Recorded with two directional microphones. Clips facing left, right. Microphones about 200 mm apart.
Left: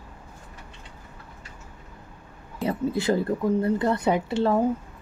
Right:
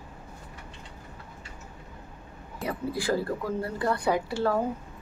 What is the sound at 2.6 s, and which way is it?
Speech, 25° left (ahead or behind).